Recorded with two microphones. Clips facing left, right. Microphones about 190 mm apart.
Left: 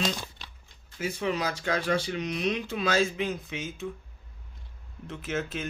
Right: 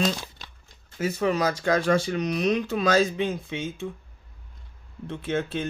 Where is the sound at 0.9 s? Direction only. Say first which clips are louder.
Right 5 dB; 45° right (ahead or behind).